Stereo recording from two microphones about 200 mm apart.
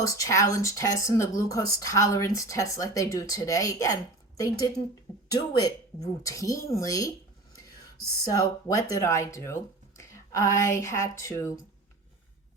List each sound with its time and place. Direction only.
0.0 s speech: 15° left (ahead or behind)
8.2 s speech: 15° left (ahead or behind)